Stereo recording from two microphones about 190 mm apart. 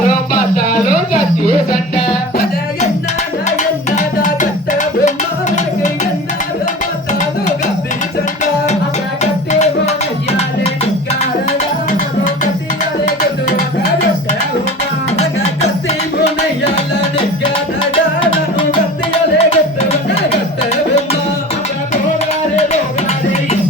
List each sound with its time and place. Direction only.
3.6 s music: 40° left (ahead or behind)
9.2 s music: 35° left (ahead or behind)
15.1 s music: 35° left (ahead or behind)
17.9 s music: 25° left (ahead or behind)